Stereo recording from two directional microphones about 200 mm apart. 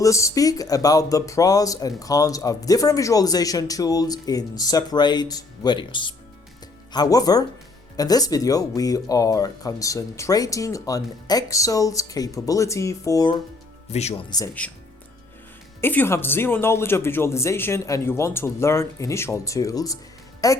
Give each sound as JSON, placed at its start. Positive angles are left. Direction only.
{"t": 0.0, "sound": "speech", "side_deg": 15}
{"t": 13.9, "sound": "speech", "side_deg": 30}
{"t": 14.3, "sound": "speech", "side_deg": 20}
{"t": 15.8, "sound": "speech", "side_deg": 10}